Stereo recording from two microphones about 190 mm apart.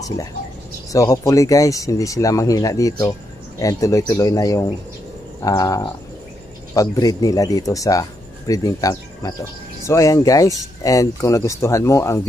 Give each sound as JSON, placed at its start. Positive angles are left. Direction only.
{"t": 0.9, "sound": "speech", "side_deg": 15}